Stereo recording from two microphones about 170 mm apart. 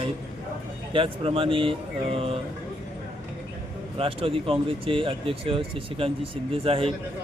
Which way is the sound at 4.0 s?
35° right (ahead or behind).